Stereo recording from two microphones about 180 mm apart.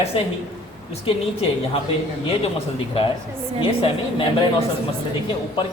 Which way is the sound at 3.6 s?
30° left (ahead or behind).